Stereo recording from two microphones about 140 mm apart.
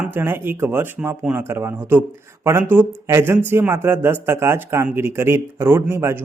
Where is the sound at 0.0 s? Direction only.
15° right (ahead or behind).